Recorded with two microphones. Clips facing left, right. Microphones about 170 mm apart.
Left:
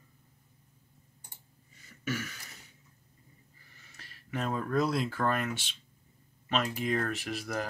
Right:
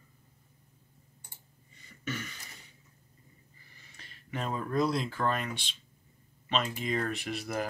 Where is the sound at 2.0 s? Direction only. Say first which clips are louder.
Left 3 dB; 5° left (ahead or behind).